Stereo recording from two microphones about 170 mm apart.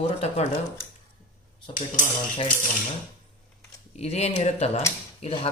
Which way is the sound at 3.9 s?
40° left (ahead or behind).